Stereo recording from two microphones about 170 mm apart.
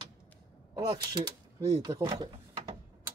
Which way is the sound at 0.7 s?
25° right (ahead or behind).